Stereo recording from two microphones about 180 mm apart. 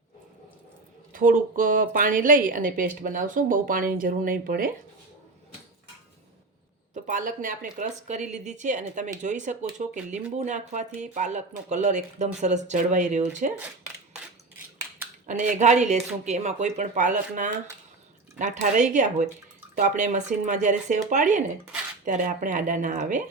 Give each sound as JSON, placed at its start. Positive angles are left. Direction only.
{"t": 1.1, "sound": "a woman's voice", "side_deg": -50}
{"t": 6.9, "sound": "a woman's voice", "side_deg": -45}
{"t": 15.3, "sound": "a woman's voice", "side_deg": -45}